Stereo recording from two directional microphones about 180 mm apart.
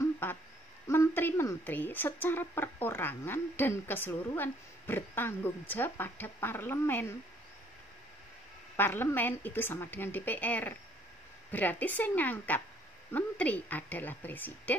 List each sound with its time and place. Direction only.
0.0 s a sound: 10° left (ahead or behind)
0.8 s a woman's voice: 10° left (ahead or behind)
8.7 s a woman's voice: 10° left (ahead or behind)